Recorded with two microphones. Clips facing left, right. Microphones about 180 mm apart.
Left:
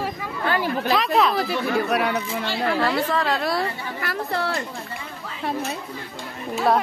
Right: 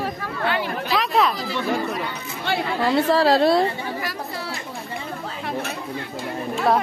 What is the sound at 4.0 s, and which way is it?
Chatter, 60° left (ahead or behind).